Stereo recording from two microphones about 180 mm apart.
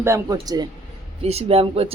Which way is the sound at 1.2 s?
35° right (ahead or behind).